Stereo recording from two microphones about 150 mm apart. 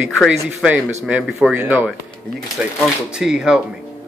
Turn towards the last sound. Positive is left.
turn(degrees=-5)  # may be behind; listen again after turning